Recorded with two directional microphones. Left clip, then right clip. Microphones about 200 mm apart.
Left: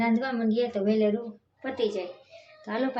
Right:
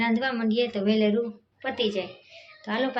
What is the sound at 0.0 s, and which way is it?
A woman's voice, 5° left (ahead or behind).